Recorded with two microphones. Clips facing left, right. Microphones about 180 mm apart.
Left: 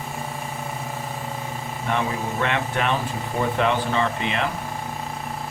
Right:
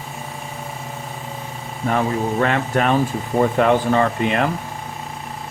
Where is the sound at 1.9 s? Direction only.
40° right (ahead or behind).